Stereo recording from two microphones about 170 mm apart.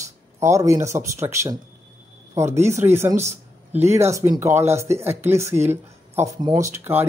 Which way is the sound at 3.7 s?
15° right (ahead or behind).